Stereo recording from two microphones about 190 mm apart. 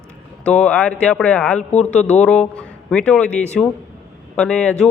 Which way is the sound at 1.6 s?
35° left (ahead or behind).